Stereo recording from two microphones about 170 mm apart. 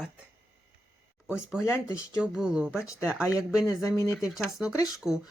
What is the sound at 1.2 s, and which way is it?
Speech, 5° right (ahead or behind).